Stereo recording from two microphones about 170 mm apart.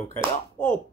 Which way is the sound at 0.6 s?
15° left (ahead or behind).